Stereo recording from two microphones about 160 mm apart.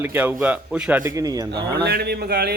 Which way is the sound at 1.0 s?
20° right (ahead or behind).